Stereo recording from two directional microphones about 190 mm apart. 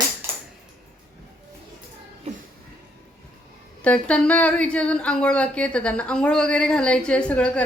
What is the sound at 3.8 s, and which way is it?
Speech, 5° left (ahead or behind).